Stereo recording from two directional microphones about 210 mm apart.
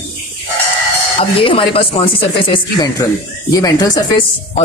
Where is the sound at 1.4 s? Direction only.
25° left (ahead or behind).